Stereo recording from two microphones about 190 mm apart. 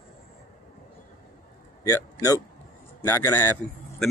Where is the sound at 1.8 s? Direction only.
15° left (ahead or behind).